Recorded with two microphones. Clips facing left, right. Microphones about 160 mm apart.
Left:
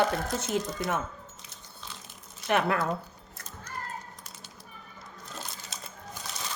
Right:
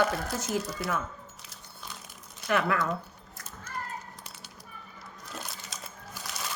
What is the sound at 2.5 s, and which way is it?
Speech, 30° left (ahead or behind).